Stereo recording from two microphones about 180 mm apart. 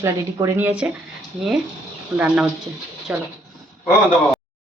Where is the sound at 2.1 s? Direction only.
5° right (ahead or behind).